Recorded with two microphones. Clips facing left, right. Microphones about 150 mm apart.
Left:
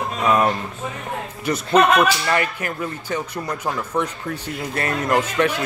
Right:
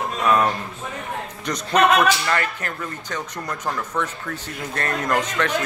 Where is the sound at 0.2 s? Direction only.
10° left (ahead or behind).